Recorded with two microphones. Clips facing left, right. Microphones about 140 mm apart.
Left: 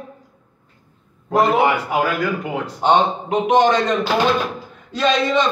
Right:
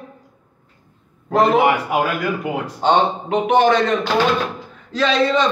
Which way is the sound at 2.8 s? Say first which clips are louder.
Even; 15° left (ahead or behind).